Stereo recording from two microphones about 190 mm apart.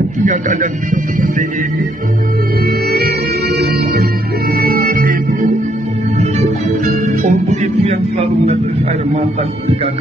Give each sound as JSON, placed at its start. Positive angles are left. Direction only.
{"t": 0.2, "sound": "a man's voice", "side_deg": -45}
{"t": 2.6, "sound": "music", "side_deg": -55}
{"t": 9.1, "sound": "a man's voice", "side_deg": -35}